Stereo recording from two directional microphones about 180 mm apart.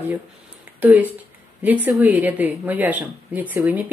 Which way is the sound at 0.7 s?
10° right (ahead or behind).